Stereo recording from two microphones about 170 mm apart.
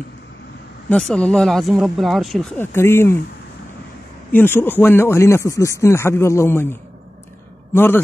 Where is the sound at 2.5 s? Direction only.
15° left (ahead or behind).